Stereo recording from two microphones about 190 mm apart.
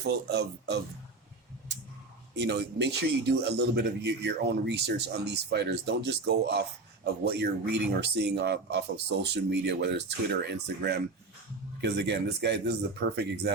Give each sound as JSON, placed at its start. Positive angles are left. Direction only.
{"t": 0.0, "sound": "speech", "side_deg": -60}
{"t": 2.3, "sound": "speech", "side_deg": -65}